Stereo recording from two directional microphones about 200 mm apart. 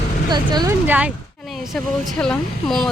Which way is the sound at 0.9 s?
5° right (ahead or behind).